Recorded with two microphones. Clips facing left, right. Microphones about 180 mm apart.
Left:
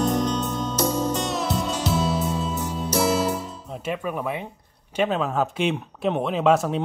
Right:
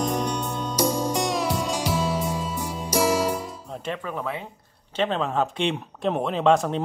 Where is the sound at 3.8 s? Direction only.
10° left (ahead or behind).